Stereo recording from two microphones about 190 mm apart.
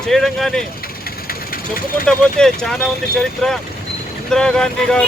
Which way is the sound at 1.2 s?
50° left (ahead or behind).